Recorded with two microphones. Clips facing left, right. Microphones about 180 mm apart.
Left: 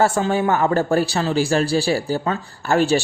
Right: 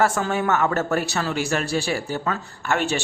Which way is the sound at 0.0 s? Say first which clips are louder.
Left 3 dB; 30° left (ahead or behind).